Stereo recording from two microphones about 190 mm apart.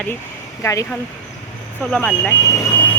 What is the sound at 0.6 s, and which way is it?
Speech, 15° left (ahead or behind).